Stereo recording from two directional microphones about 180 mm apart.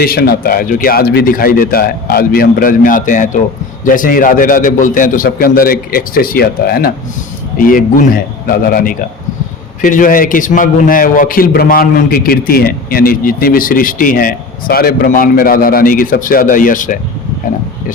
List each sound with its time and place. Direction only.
0.0 s a man's voice: 55° left (ahead or behind)